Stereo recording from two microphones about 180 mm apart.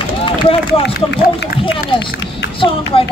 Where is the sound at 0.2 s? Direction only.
30° left (ahead or behind).